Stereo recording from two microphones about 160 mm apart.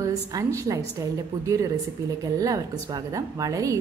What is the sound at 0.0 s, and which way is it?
Speech, 20° right (ahead or behind).